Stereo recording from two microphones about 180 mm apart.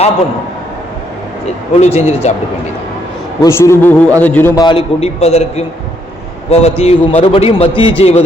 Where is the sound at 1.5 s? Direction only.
35° left (ahead or behind).